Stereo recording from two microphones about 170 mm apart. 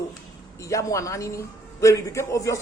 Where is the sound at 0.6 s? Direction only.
20° left (ahead or behind).